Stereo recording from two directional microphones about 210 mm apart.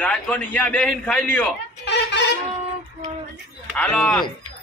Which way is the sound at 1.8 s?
55° left (ahead or behind).